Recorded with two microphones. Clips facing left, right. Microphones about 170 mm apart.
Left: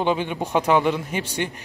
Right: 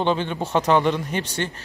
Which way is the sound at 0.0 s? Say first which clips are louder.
Even; 10° left (ahead or behind).